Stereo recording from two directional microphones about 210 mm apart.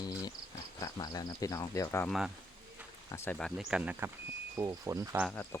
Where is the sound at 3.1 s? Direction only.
10° left (ahead or behind); by 5.2 s 15° right (ahead or behind).